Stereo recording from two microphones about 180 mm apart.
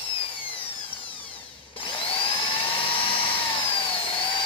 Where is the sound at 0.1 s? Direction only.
30° left (ahead or behind).